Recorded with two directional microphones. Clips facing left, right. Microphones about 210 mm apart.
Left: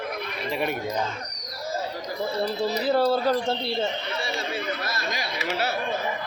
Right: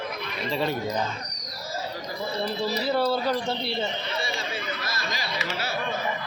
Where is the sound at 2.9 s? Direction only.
40° left (ahead or behind).